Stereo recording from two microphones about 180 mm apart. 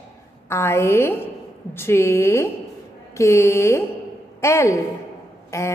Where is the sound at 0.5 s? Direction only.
15° left (ahead or behind).